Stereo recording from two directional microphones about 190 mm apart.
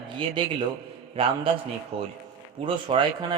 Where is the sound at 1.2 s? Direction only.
30° right (ahead or behind).